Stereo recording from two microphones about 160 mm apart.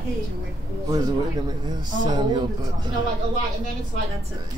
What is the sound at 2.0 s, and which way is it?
Speech, 25° right (ahead or behind).